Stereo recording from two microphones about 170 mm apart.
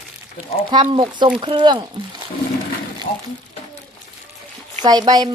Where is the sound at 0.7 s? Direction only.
25° right (ahead or behind).